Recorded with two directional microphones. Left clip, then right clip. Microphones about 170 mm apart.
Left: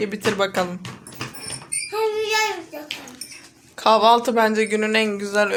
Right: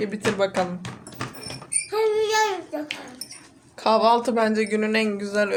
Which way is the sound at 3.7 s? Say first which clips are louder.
Left 4 dB; centre (ahead or behind).